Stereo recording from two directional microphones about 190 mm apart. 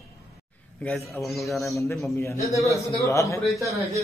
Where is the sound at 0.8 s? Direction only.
5° left (ahead or behind).